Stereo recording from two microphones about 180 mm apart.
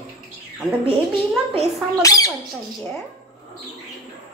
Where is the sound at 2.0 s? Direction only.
20° left (ahead or behind).